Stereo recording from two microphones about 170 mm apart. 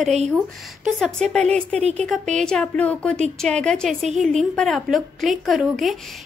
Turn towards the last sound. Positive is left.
turn(degrees=0)  # may be behind; listen again after turning